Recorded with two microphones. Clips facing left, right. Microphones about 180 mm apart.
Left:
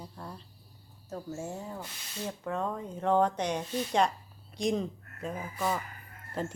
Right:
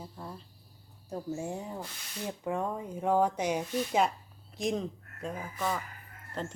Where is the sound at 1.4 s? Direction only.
15° right (ahead or behind).